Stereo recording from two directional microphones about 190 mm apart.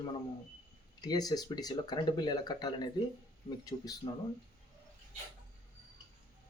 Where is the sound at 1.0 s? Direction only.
20° left (ahead or behind).